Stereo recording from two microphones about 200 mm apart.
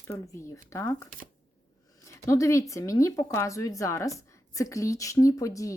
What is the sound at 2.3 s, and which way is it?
Speech, 15° left (ahead or behind).